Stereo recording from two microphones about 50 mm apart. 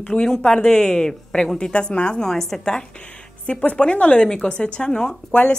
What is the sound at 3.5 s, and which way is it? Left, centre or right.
A woman's voice, left.